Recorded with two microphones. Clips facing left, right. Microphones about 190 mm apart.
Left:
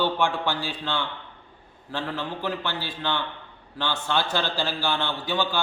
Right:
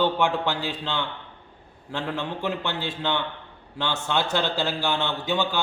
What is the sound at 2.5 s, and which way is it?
A man's voice, 25° right (ahead or behind).